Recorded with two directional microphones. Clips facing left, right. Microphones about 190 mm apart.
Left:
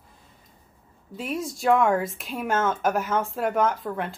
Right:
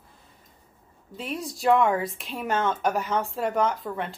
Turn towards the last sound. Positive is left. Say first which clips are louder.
# left 2 dB
turn(degrees=0)  # may be behind; listen again after turning